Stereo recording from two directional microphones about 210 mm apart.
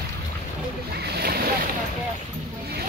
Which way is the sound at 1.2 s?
45° right (ahead or behind).